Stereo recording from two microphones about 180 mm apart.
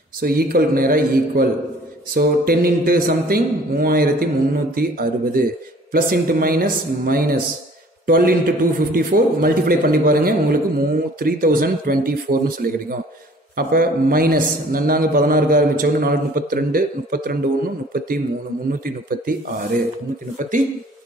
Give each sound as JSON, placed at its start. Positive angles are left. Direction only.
{"t": 0.2, "sound": "a man's voice", "side_deg": -55}